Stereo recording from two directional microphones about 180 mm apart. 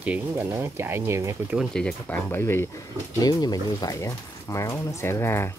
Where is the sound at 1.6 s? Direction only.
5° left (ahead or behind).